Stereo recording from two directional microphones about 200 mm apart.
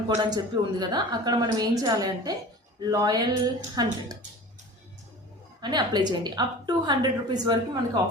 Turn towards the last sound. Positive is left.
turn(degrees=-20)  # may be behind; listen again after turning